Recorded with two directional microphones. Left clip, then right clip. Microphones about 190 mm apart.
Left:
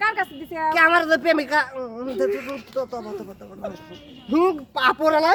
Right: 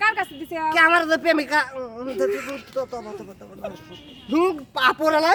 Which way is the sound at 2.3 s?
35° right (ahead or behind).